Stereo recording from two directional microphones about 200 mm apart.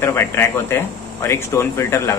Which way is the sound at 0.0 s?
10° left (ahead or behind).